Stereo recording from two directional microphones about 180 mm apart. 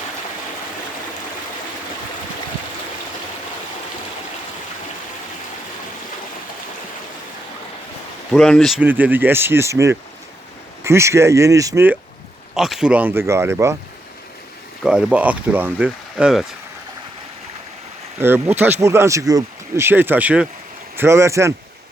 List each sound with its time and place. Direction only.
8.3 s speech: centre (ahead or behind); by 11.9 s 15° right (ahead or behind)
12.5 s speech: centre (ahead or behind)
14.8 s speech: 5° right (ahead or behind)
18.2 s speech: 10° right (ahead or behind)